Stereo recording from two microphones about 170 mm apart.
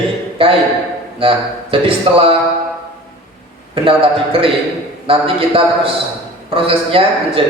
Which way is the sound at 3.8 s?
30° right (ahead or behind).